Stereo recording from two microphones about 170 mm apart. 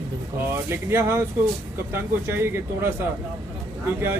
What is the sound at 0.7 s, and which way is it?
Speech, 15° right (ahead or behind).